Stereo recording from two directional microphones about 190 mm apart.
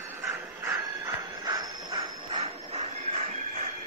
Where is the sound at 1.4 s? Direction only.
20° right (ahead or behind).